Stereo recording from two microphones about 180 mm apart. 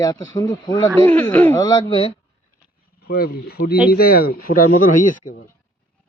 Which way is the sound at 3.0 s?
55° left (ahead or behind).